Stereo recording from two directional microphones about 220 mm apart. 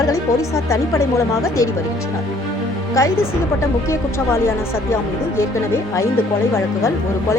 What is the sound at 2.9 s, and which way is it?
Speech, 15° left (ahead or behind).